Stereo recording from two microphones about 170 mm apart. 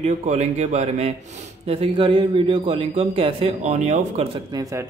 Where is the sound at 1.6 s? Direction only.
30° right (ahead or behind).